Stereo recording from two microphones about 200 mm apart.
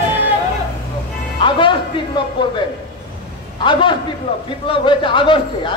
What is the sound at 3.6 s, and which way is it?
A man's voice, 25° left (ahead or behind).